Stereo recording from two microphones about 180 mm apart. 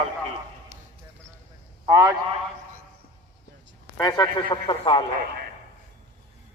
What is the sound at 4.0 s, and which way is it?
A man's voice, 20° left (ahead or behind).